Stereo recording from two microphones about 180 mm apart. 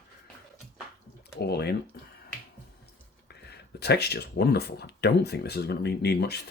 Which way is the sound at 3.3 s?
65° left (ahead or behind).